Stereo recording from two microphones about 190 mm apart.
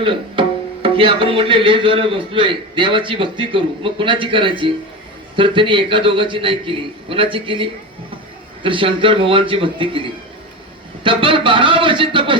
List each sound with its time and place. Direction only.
0.0 s music: 25° right (ahead or behind)